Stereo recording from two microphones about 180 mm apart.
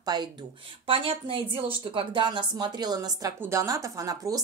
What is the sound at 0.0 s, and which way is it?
A woman's voice, 25° right (ahead or behind).